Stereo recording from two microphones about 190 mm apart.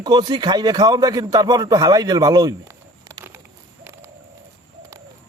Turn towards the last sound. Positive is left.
turn(degrees=-10)  # may be behind; listen again after turning